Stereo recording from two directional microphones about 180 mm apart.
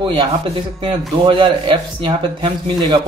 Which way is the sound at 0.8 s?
30° right (ahead or behind).